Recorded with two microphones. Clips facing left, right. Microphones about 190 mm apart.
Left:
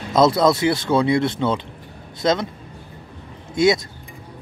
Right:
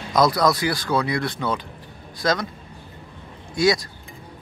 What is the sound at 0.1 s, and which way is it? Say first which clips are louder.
Speech: left 3 dB; 25° left (ahead or behind).